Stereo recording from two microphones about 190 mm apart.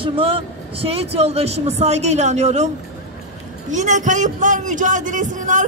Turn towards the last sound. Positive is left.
turn(degrees=-40)  # may be behind; listen again after turning